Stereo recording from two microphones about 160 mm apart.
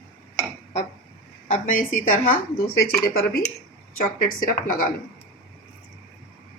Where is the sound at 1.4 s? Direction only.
55° left (ahead or behind).